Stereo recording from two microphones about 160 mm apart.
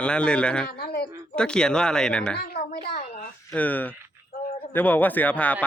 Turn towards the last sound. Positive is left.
turn(degrees=10)  # may be behind; listen again after turning